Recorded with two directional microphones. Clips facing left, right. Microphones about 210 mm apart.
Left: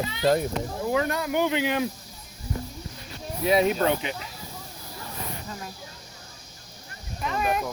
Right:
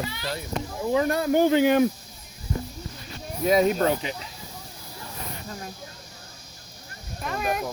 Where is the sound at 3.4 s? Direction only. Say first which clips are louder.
Right 1 dB; 45° right (ahead or behind).